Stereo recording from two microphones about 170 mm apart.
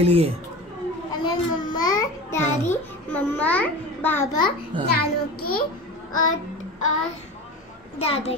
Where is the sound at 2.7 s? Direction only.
10° left (ahead or behind).